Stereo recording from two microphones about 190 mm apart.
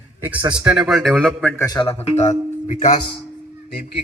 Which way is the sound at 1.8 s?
35° left (ahead or behind).